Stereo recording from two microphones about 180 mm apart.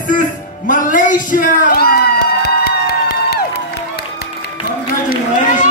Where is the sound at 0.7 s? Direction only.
50° left (ahead or behind); by 4.0 s 65° left (ahead or behind).